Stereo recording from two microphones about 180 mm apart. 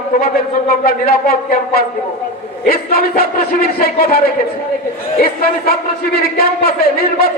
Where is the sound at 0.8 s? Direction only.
55° left (ahead or behind).